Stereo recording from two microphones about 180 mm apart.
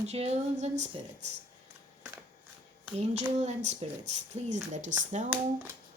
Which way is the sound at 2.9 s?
40° right (ahead or behind).